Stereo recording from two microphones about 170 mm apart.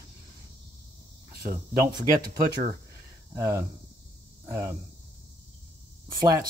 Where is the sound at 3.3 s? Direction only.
15° right (ahead or behind).